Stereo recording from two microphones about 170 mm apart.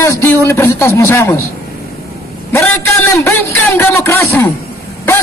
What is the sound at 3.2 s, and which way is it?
A man's voice, 15° left (ahead or behind).